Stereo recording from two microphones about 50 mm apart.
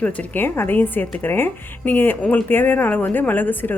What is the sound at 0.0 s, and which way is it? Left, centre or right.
Speech, left.